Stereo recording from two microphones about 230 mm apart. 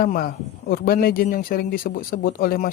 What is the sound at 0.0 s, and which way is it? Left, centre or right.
Speech, left.